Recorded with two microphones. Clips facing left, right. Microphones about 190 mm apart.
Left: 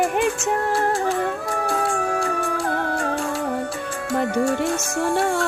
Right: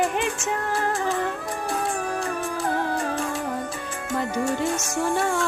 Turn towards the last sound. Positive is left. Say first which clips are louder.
# left 4 dB
turn(degrees=60)  # may be behind; listen again after turning